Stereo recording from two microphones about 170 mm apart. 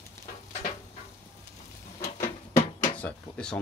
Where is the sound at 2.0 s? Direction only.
50° left (ahead or behind).